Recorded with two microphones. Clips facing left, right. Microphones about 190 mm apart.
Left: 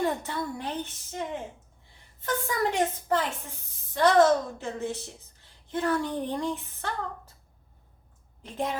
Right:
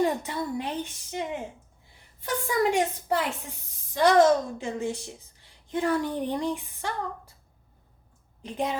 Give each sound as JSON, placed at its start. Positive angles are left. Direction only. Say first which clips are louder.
{"t": 0.0, "sound": "a woman's voice", "louder": "right 3 dB", "side_deg": -15}
{"t": 8.4, "sound": "a woman's voice", "louder": "right 2 dB", "side_deg": -15}